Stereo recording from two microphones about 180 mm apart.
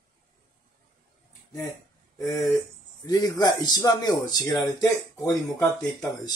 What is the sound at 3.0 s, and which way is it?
Speech, 20° left (ahead or behind).